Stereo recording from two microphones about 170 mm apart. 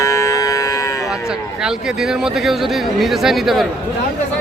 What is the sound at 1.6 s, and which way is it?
Speech, 5° right (ahead or behind).